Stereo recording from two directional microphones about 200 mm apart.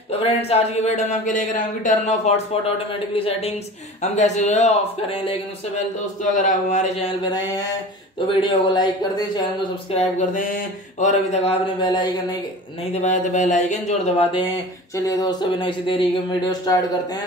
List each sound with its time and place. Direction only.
0.2 s speech: 30° left (ahead or behind)
6.3 s speech: 40° left (ahead or behind); by 12.1 s 20° left (ahead or behind)
12.9 s speech: 35° left (ahead or behind)
15.0 s speech: 20° left (ahead or behind)